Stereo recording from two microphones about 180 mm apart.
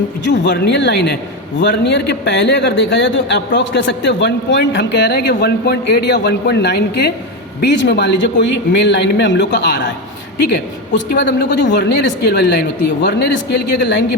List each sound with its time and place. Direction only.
0.3 s a man's voice: 70° left (ahead or behind)